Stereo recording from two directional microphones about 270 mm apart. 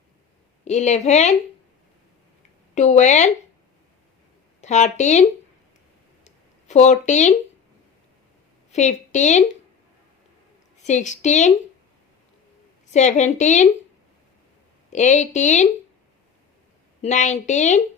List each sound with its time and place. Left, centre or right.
0.6 s a woman's voice: left
2.7 s a woman's voice: left
4.6 s a woman's voice: left
6.2 s a sound: left
8.7 s a woman's voice: left
10.8 s a woman's voice: left
12.9 s a woman's voice: left
14.9 s a woman's voice: left
17.0 s a woman's voice: left